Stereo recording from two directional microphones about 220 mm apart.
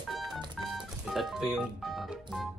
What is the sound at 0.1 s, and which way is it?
Music, centre (ahead or behind).